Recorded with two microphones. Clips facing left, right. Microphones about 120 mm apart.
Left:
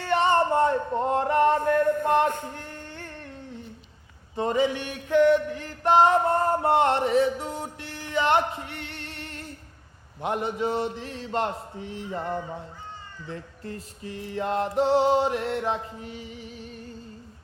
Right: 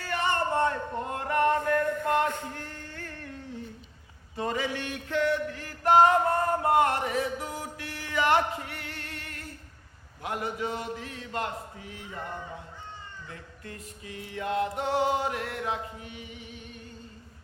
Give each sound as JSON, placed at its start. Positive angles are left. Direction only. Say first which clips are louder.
{"t": 0.0, "sound": "music", "louder": "left 7 dB", "side_deg": 25}
{"t": 4.4, "sound": "music", "louder": "left 6 dB", "side_deg": 25}
{"t": 13.2, "sound": "music", "louder": "left 7 dB", "side_deg": 35}